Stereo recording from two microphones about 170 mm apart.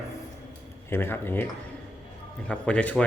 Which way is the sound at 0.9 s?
15° left (ahead or behind).